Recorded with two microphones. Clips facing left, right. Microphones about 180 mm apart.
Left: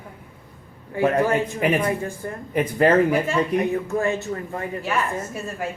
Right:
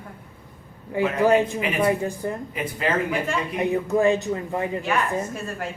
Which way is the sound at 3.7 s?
15° right (ahead or behind).